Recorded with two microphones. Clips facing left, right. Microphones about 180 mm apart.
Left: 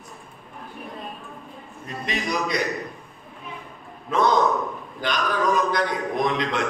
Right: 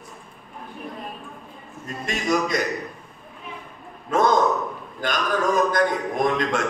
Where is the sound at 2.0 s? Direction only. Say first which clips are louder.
Right 3 dB; 45° right (ahead or behind).